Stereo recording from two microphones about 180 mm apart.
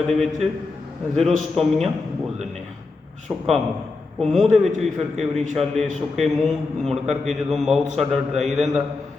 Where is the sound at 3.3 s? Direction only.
10° right (ahead or behind).